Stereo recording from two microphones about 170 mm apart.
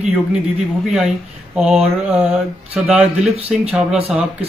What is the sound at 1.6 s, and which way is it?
Speech, 5° right (ahead or behind).